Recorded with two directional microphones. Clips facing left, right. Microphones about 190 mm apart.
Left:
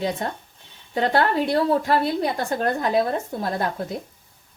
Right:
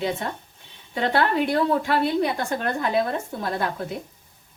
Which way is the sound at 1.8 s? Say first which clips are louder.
Even; 40° left (ahead or behind).